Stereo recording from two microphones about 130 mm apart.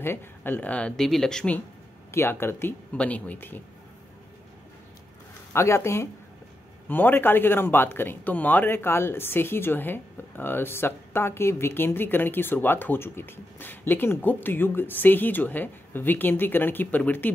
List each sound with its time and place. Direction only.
0.0 s speech: 15° left (ahead or behind)
2.0 s speech: 20° left (ahead or behind)
5.5 s speech: 20° left (ahead or behind)